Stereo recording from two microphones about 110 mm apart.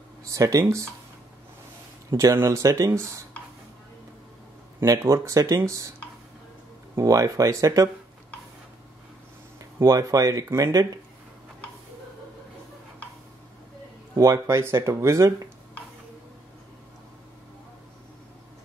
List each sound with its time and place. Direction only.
0.2 s speech: 30° right (ahead or behind)
2.0 s speech: 30° right (ahead or behind)
4.7 s speech: 30° right (ahead or behind)
7.0 s speech: 30° right (ahead or behind)
9.6 s speech: 30° right (ahead or behind)
14.1 s speech: 30° right (ahead or behind)